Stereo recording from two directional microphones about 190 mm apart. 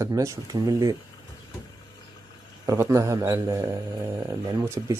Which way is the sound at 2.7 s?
15° right (ahead or behind).